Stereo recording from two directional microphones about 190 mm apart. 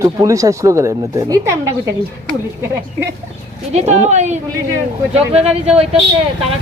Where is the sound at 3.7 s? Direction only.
35° right (ahead or behind).